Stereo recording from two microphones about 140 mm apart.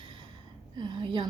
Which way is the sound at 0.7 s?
35° right (ahead or behind).